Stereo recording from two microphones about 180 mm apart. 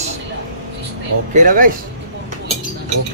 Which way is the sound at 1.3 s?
50° right (ahead or behind).